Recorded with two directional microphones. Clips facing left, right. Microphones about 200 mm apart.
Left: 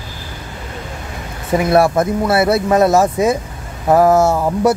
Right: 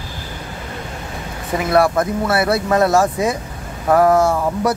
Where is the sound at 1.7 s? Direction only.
25° left (ahead or behind).